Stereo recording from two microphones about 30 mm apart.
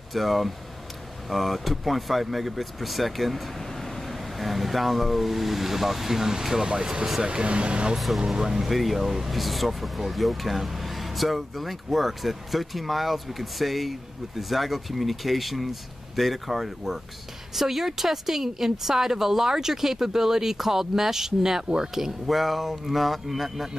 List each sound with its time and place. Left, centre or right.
0.1 s speech: centre; by 7.9 s right
8.3 s a woman's voice: centre
22.3 s speech: centre